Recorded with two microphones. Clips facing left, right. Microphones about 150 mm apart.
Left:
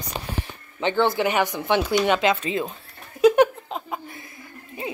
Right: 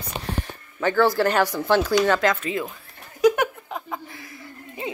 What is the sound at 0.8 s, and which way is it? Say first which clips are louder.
Speech: right 2 dB; 20° left (ahead or behind).